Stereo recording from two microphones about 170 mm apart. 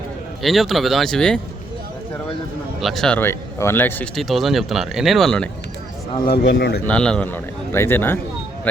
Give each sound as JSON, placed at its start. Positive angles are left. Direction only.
{"t": 0.4, "sound": "speech", "side_deg": 0}
{"t": 2.8, "sound": "speech", "side_deg": 0}
{"t": 6.2, "sound": "a man's voice", "side_deg": 65}
{"t": 6.8, "sound": "a man's voice", "side_deg": 5}